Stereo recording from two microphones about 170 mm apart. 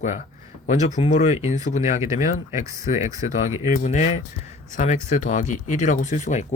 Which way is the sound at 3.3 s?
45° left (ahead or behind).